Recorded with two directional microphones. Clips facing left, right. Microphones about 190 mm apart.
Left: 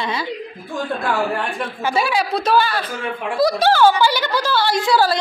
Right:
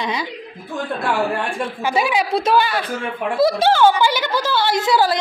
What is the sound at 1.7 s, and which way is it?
Speech, 15° right (ahead or behind).